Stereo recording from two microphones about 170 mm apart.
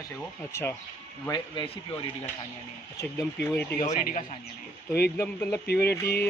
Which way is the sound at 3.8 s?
45° left (ahead or behind).